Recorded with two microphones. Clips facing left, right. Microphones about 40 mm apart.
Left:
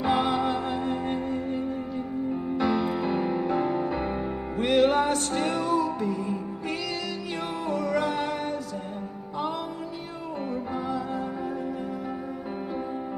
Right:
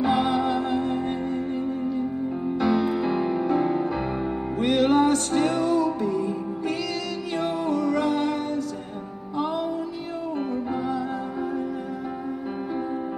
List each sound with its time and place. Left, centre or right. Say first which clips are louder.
0.0 s music: right 2 dB; centre
2.6 s music: right 3 dB; centre
7.5 s music: right 3 dB; left